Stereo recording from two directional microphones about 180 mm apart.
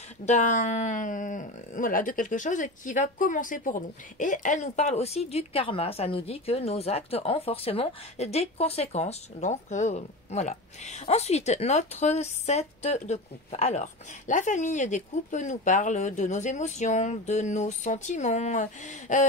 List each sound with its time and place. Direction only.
0.2 s speech: 40° left (ahead or behind)